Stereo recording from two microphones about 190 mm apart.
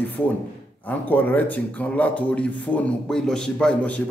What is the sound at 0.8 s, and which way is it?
Speech, 10° left (ahead or behind).